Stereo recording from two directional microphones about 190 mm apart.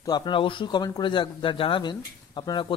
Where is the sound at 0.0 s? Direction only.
25° left (ahead or behind).